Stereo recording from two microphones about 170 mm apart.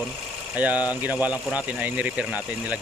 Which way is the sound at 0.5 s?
10° right (ahead or behind).